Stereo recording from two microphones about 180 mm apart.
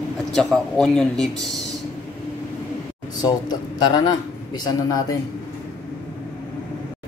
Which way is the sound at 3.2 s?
20° left (ahead or behind).